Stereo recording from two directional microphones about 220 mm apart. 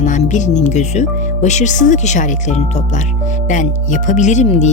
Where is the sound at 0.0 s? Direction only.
35° left (ahead or behind).